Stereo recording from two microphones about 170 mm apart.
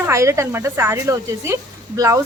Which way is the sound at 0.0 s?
15° right (ahead or behind).